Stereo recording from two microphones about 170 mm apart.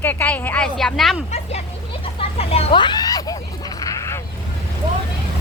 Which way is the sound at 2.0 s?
35° left (ahead or behind).